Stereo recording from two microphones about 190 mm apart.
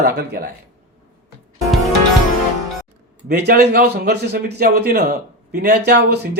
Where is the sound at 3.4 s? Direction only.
55° right (ahead or behind).